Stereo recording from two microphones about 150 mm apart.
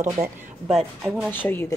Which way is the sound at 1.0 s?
Centre (ahead or behind).